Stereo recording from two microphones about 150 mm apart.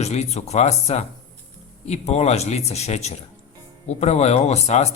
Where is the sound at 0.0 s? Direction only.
45° left (ahead or behind).